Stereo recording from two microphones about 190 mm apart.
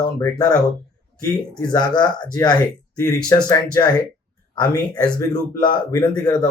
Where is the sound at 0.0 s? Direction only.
15° left (ahead or behind).